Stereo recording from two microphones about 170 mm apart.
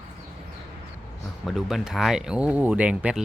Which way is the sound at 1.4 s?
Centre (ahead or behind).